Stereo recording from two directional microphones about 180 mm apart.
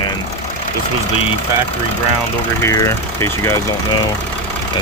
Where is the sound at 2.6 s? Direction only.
15° left (ahead or behind).